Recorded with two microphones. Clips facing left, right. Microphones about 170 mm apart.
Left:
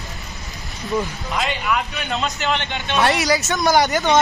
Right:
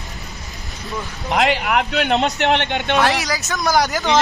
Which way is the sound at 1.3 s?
75° right (ahead or behind).